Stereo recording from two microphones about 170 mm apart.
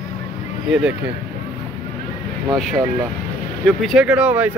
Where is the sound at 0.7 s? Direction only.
5° right (ahead or behind).